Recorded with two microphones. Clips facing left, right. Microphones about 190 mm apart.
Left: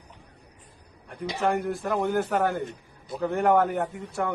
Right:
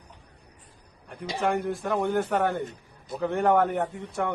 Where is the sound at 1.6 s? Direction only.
Centre (ahead or behind).